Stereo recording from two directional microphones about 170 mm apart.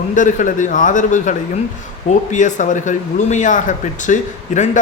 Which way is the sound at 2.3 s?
45° left (ahead or behind).